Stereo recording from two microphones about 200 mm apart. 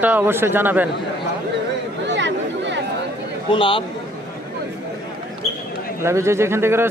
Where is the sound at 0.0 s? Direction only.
10° right (ahead or behind).